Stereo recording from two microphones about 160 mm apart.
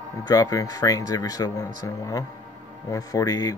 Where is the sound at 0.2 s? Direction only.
25° left (ahead or behind).